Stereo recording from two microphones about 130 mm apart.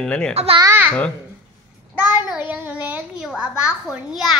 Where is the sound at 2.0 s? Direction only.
15° right (ahead or behind).